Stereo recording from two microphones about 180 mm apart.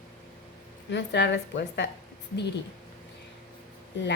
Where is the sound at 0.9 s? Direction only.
75° left (ahead or behind).